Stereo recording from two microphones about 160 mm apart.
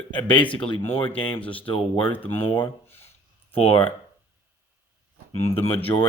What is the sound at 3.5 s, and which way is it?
Speech, 35° left (ahead or behind).